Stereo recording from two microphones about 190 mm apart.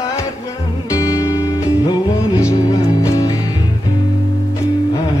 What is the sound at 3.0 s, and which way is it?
Music, 15° left (ahead or behind).